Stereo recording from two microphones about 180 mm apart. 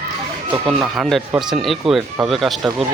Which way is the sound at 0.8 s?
Centre (ahead or behind).